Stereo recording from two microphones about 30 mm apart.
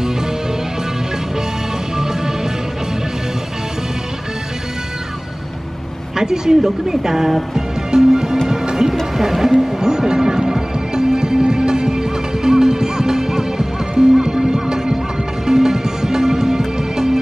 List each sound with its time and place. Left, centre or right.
2.0 s music: centre
6.1 s a woman's voice: right
7.5 s music: centre
9.1 s speech: centre
9.8 s music: centre